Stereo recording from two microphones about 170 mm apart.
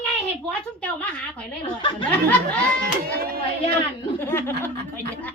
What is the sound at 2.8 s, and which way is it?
Speech, 65° right (ahead or behind).